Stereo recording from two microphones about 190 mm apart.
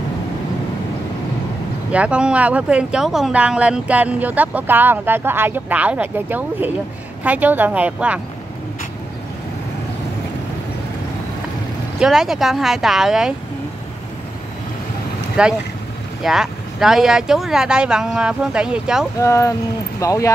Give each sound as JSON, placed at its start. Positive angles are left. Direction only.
{"t": 1.9, "sound": "speech", "side_deg": -5}
{"t": 12.0, "sound": "speech", "side_deg": 0}
{"t": 15.4, "sound": "speech", "side_deg": -5}
{"t": 19.1, "sound": "speech", "side_deg": 15}